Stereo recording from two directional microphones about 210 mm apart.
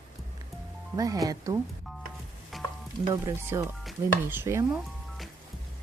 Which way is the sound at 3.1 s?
15° right (ahead or behind).